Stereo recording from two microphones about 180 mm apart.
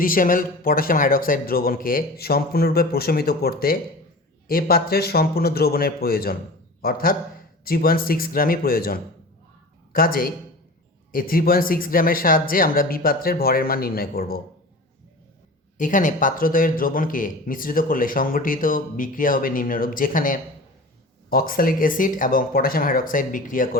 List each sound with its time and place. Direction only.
0.0 s a man's voice: 50° left (ahead or behind)
15.8 s a man's voice: 45° left (ahead or behind)